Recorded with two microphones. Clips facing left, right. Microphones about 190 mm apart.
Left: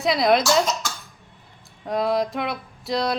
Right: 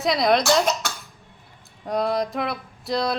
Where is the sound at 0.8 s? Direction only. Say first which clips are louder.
Right 1 dB; 65° right (ahead or behind).